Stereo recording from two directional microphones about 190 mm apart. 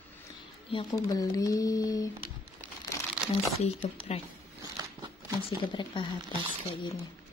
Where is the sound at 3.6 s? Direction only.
35° left (ahead or behind).